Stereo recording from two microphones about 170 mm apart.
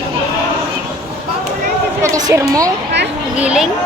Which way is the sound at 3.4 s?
5° right (ahead or behind).